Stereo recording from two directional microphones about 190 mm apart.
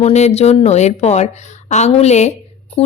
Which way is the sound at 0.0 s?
35° left (ahead or behind).